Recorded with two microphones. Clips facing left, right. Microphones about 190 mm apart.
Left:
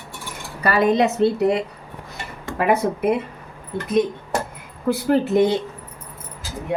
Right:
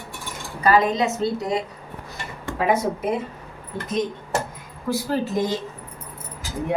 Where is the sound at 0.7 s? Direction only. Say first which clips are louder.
Left 2 dB; 65° left (ahead or behind).